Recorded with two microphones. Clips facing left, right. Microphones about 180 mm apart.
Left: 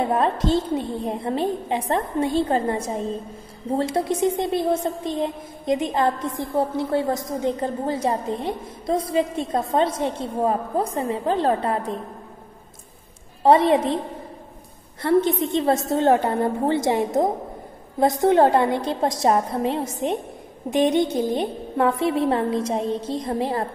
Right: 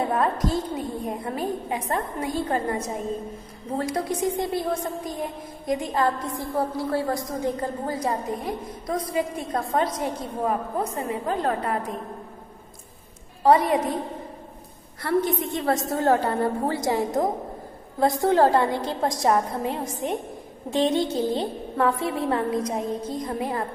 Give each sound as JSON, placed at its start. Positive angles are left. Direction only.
{"t": 0.0, "sound": "a woman's voice", "side_deg": 25}
{"t": 13.4, "sound": "a woman's voice", "side_deg": 25}
{"t": 15.0, "sound": "a woman's voice", "side_deg": 25}